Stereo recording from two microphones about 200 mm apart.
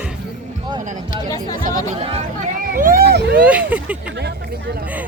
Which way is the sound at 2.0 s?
30° right (ahead or behind).